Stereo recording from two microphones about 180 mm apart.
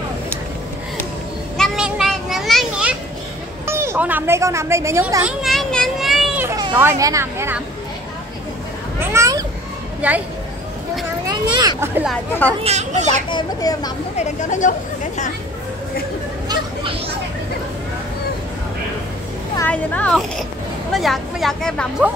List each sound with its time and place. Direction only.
1.6 s children playing: 5° right (ahead or behind)
3.6 s a sound: 15° right (ahead or behind)
6.4 s speech: 15° right (ahead or behind)
9.1 s a sound: 20° right (ahead or behind)
10.0 s speech: 10° right (ahead or behind)
11.5 s speech: 15° right (ahead or behind)
12.3 s speech: 10° left (ahead or behind)
12.6 s speech: 40° right (ahead or behind)
13.3 s a child's voice: 25° left (ahead or behind)
14.1 s speech: 40° left (ahead or behind)
19.7 s speech: 10° left (ahead or behind)